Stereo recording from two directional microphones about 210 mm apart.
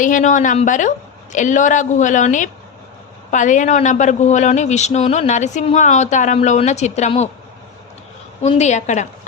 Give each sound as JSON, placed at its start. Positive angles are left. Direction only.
{"t": 0.0, "sound": "speech", "side_deg": 35}
{"t": 8.4, "sound": "speech", "side_deg": 30}